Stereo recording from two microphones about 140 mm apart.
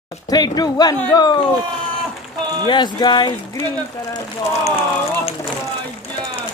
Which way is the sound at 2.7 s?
35° left (ahead or behind).